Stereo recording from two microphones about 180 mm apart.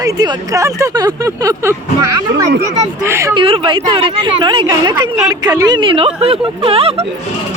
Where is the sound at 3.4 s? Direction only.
30° right (ahead or behind).